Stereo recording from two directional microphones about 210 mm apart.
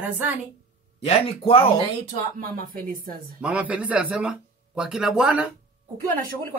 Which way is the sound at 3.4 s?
5° right (ahead or behind).